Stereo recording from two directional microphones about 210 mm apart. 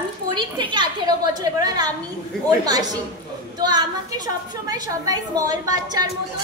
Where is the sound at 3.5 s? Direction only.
20° right (ahead or behind).